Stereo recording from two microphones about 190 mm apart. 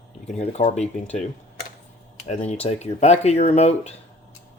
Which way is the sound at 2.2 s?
35° left (ahead or behind).